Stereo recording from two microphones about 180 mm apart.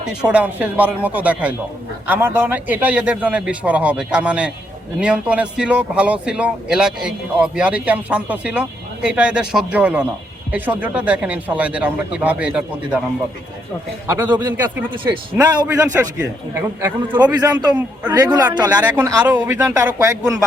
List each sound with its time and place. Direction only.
0.0 s speech: 5° right (ahead or behind)
14.1 s speech: 15° right (ahead or behind)
14.8 s a man's voice: 25° right (ahead or behind)
15.6 s a man's voice: 10° right (ahead or behind)
18.8 s speech: 10° right (ahead or behind)